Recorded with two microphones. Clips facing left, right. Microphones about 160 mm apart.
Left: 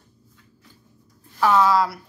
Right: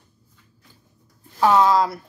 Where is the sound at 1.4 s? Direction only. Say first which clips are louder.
Right 1 dB; 20° right (ahead or behind).